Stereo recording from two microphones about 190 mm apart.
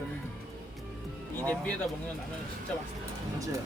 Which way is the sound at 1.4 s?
10° left (ahead or behind).